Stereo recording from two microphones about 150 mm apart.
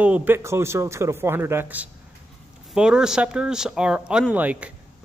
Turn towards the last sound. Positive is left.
turn(degrees=-10)  # may be behind; listen again after turning